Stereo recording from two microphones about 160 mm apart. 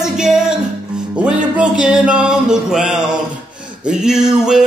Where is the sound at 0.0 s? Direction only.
5° right (ahead or behind).